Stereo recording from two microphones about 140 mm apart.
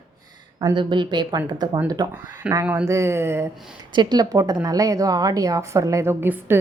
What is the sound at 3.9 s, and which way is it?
A woman's voice, 30° right (ahead or behind).